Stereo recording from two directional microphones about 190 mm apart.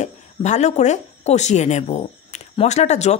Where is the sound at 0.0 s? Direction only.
40° left (ahead or behind).